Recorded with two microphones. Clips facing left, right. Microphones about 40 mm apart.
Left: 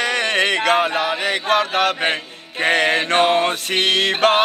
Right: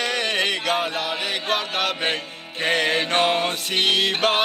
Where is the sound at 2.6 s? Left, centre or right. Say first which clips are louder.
Left 4 dB; left.